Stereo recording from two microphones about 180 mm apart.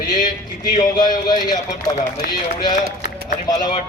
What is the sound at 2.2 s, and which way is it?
Speech, 60° left (ahead or behind).